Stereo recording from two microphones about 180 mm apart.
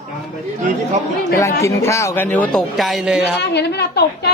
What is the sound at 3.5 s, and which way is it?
Speech, 65° left (ahead or behind).